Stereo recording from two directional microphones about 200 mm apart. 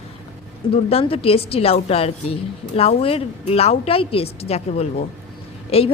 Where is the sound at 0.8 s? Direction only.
30° left (ahead or behind).